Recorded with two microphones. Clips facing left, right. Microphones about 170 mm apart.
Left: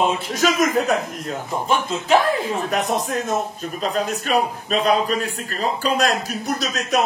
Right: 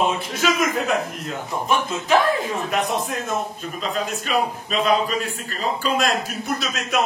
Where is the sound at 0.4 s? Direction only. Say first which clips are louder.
Left 4 dB; 40° left (ahead or behind).